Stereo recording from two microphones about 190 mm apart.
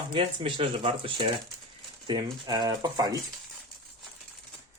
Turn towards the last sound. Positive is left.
turn(degrees=-20)  # may be behind; listen again after turning